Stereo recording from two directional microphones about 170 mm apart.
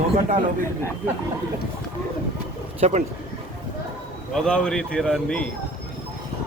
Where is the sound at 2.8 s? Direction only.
40° right (ahead or behind).